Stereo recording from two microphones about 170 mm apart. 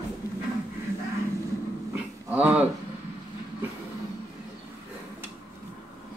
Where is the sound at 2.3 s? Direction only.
10° right (ahead or behind).